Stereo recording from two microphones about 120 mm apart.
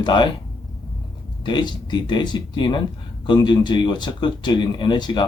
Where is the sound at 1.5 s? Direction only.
40° left (ahead or behind).